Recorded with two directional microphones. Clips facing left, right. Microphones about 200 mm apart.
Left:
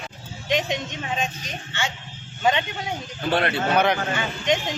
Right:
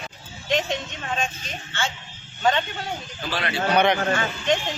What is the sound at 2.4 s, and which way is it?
Speech, 15° left (ahead or behind).